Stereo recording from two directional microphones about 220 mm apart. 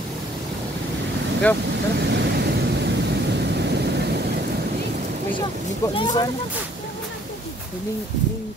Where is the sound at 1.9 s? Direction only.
50° right (ahead or behind).